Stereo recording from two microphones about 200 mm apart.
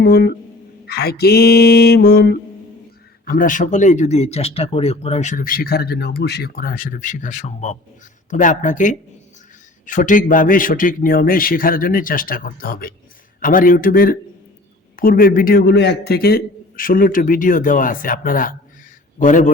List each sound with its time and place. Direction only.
0.0 s a man's voice: 55° left (ahead or behind); by 19.5 s 40° left (ahead or behind)